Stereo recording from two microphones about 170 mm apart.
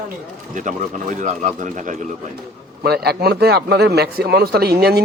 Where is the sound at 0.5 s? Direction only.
45° right (ahead or behind).